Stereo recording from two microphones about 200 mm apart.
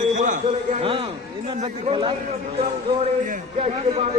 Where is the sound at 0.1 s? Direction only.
40° right (ahead or behind).